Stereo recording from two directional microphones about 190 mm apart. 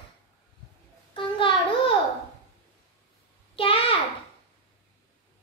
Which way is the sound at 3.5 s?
30° left (ahead or behind).